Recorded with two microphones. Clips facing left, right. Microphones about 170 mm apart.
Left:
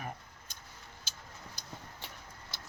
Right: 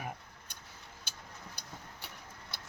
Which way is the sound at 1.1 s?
60° right (ahead or behind).